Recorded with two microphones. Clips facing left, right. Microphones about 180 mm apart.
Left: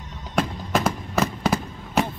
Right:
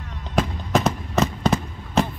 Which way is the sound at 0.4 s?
Centre (ahead or behind).